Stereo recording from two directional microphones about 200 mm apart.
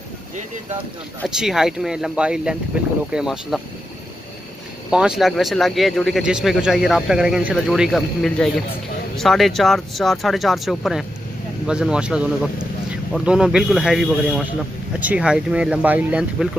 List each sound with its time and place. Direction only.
1.2 s speech: 5° right (ahead or behind)
4.9 s speech: 5° right (ahead or behind)